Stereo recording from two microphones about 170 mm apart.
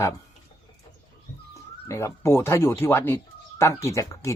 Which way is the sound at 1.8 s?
15° left (ahead or behind).